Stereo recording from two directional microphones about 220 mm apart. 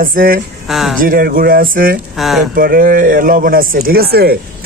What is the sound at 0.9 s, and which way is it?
Speech, 40° right (ahead or behind).